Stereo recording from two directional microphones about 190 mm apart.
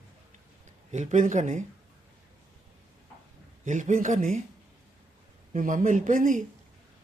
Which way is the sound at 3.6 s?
40° right (ahead or behind).